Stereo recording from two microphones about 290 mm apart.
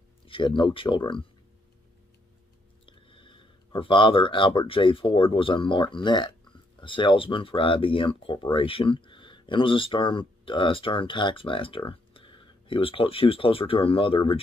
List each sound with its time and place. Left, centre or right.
0.3 s speech: centre
2.9 s speech: centre